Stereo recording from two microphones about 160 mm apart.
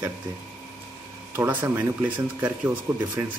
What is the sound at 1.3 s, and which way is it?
Speech, 15° right (ahead or behind).